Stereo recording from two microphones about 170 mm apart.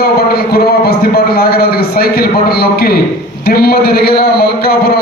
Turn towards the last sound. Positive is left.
turn(degrees=65)  # may be behind; listen again after turning